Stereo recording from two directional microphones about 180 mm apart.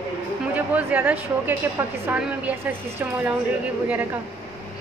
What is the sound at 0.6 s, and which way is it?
A woman's voice, 10° right (ahead or behind).